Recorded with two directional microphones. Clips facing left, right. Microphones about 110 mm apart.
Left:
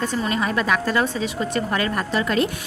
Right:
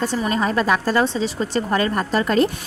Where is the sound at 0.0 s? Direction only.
35° right (ahead or behind).